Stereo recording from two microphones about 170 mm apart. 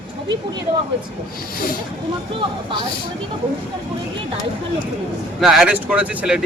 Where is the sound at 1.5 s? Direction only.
55° left (ahead or behind).